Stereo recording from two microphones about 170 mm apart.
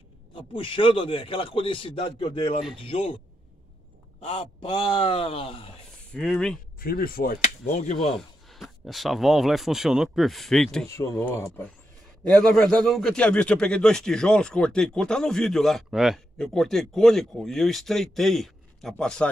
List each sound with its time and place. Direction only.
0.3 s a man's voice: 30° left (ahead or behind)
4.2 s a man's voice: 35° left (ahead or behind)
6.1 s a man's voice: 5° left (ahead or behind)
6.8 s speech: 60° left (ahead or behind)
7.8 s a man's voice: 40° left (ahead or behind)
8.2 s speech: centre (ahead or behind)
10.9 s a man's voice: 15° left (ahead or behind)